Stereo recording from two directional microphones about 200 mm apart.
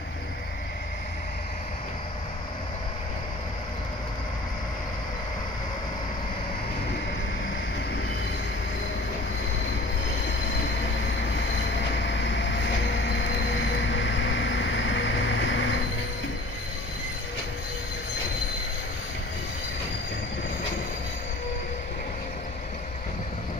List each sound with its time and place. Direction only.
12.0 s train: 65° left (ahead or behind)
13.1 s vehicle: 65° left (ahead or behind)